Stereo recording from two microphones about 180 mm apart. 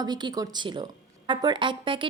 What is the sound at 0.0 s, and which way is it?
A woman's voice, 25° right (ahead or behind).